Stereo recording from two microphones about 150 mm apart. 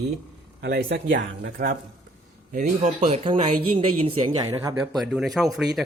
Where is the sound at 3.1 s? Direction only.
35° right (ahead or behind).